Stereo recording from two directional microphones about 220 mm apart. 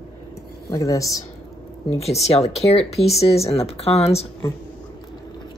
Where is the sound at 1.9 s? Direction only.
30° left (ahead or behind).